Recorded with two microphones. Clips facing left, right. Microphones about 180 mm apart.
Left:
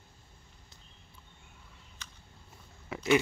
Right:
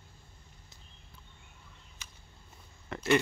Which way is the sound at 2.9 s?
5° left (ahead or behind).